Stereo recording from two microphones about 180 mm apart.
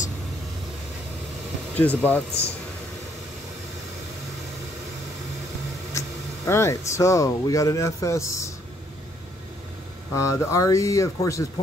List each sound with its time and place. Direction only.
1.8 s speech: 10° left (ahead or behind)
5.9 s speech: 15° left (ahead or behind)
10.1 s speech: 15° left (ahead or behind)